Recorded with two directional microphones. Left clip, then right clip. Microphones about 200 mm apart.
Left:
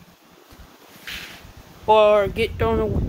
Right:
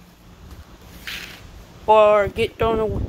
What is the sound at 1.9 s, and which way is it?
Speech, 5° left (ahead or behind).